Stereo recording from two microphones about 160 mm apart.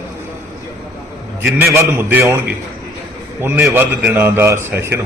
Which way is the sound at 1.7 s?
15° right (ahead or behind).